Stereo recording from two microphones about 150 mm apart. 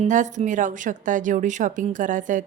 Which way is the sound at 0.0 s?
55° right (ahead or behind).